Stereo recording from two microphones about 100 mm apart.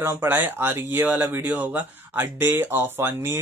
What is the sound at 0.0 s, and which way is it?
Speech, 25° right (ahead or behind).